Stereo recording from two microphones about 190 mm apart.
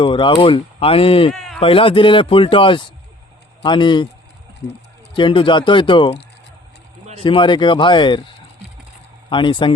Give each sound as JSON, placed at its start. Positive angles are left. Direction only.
{"t": 0.0, "sound": "speech", "side_deg": 25}
{"t": 1.3, "sound": "bleat", "side_deg": 0}
{"t": 1.6, "sound": "speech", "side_deg": 30}
{"t": 5.1, "sound": "speech", "side_deg": 25}
{"t": 7.2, "sound": "speech", "side_deg": 25}